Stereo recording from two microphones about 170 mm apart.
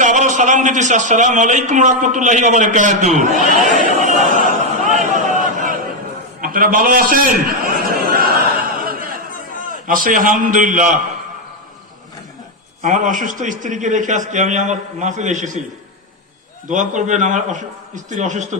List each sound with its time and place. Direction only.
0.0 s a man's voice: 45° right (ahead or behind)
3.7 s chatter: 50° right (ahead or behind)
4.9 s a sound: 50° right (ahead or behind)
9.8 s a man's voice: 55° right (ahead or behind)
12.8 s a man's voice: 45° right (ahead or behind)
16.6 s a man's voice: 45° right (ahead or behind)